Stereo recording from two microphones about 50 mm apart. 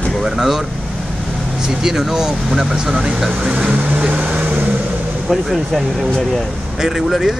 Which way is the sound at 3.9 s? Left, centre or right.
Right.